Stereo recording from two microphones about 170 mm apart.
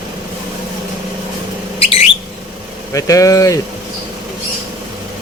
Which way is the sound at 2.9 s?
20° left (ahead or behind).